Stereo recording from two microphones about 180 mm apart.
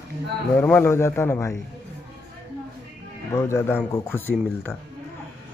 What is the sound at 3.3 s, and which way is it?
A man's voice, 15° left (ahead or behind).